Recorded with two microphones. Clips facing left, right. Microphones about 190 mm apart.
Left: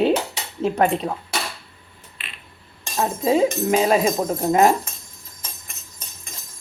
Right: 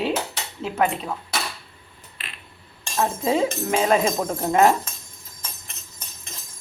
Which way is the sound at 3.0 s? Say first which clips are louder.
Left 3 dB; 15° left (ahead or behind).